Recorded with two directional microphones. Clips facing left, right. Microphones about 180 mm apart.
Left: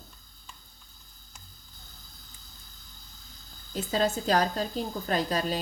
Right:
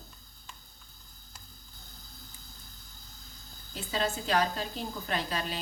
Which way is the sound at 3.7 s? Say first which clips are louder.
Left 5 dB; 40° left (ahead or behind).